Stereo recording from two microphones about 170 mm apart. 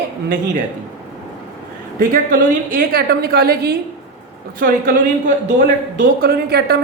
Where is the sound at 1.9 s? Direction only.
55° right (ahead or behind).